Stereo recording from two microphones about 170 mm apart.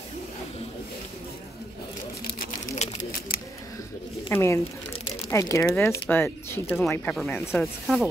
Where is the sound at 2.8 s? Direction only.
40° left (ahead or behind).